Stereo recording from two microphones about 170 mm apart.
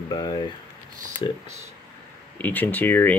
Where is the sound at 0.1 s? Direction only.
25° left (ahead or behind).